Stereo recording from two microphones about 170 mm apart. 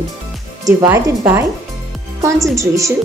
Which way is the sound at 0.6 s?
20° right (ahead or behind).